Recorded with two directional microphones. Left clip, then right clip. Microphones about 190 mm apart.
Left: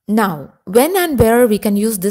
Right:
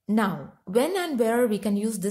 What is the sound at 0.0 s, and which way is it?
A woman's voice, 45° left (ahead or behind).